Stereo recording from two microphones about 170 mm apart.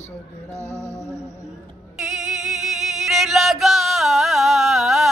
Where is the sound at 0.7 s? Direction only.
15° left (ahead or behind).